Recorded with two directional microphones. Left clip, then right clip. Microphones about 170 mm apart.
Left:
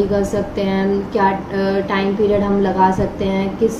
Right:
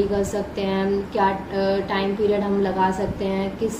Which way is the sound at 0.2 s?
40° left (ahead or behind).